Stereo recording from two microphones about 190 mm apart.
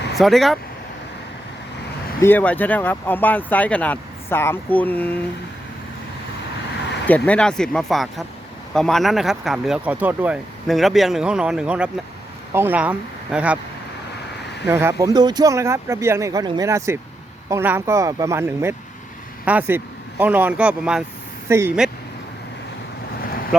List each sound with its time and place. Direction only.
0.2 s speech: centre (ahead or behind)
2.2 s speech: 10° left (ahead or behind)
7.1 s speech: 5° left (ahead or behind)
14.7 s speech: 15° right (ahead or behind)